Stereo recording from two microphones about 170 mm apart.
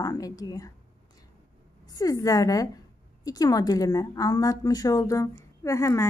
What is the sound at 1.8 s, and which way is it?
A woman's voice, 20° left (ahead or behind).